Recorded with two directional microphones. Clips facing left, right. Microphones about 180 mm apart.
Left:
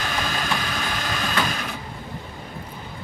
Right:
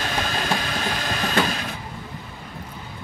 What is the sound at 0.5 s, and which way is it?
Train, 35° right (ahead or behind).